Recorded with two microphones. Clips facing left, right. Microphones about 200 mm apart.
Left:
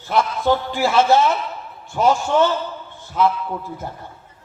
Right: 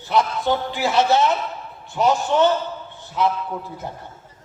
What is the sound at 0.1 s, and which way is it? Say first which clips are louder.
Speech: left 2 dB; 20° right (ahead or behind).